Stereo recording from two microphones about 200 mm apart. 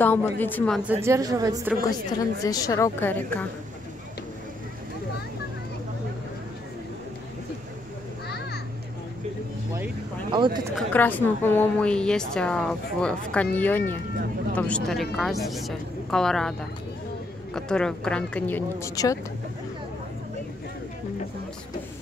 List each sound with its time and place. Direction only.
0.0 s a woman's voice: 10° left (ahead or behind)
1.0 s a woman's voice: 15° right (ahead or behind)
2.4 s a woman's voice: 15° left (ahead or behind)
10.3 s speech: 25° right (ahead or behind)
10.8 s a woman's voice: 10° left (ahead or behind)
17.6 s a woman's voice: 5° left (ahead or behind)